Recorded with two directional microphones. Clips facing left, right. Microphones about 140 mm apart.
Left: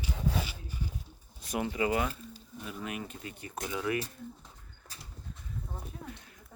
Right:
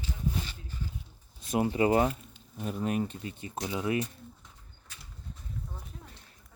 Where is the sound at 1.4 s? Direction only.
25° right (ahead or behind).